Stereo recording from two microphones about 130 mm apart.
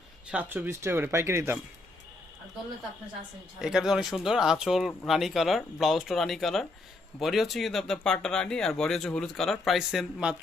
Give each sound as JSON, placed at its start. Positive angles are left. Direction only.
{"t": 0.3, "sound": "speech", "side_deg": -10}
{"t": 3.6, "sound": "speech", "side_deg": -5}